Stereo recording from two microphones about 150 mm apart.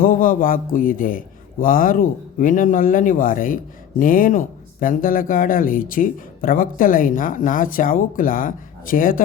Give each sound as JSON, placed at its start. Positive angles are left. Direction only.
{"t": 0.0, "sound": "a man's voice", "side_deg": 70}